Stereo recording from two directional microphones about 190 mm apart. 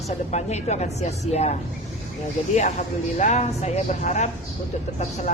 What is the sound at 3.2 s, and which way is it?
A woman's voice, 35° left (ahead or behind).